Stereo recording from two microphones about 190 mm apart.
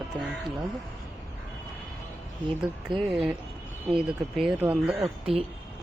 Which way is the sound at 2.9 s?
30° right (ahead or behind).